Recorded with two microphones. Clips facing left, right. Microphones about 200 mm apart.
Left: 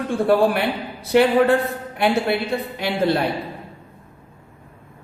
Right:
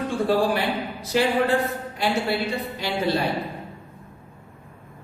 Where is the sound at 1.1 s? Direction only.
65° left (ahead or behind).